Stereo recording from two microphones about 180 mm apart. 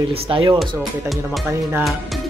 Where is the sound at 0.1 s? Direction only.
30° right (ahead or behind).